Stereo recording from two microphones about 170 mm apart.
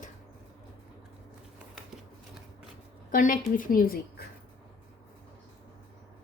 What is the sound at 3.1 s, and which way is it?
A woman's voice, 50° left (ahead or behind).